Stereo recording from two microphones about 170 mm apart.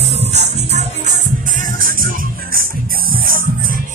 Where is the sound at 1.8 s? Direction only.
55° right (ahead or behind).